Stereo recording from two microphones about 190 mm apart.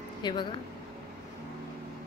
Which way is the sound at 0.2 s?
25° left (ahead or behind).